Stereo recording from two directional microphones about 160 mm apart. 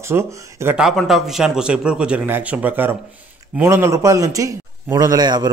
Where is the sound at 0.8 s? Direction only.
Centre (ahead or behind).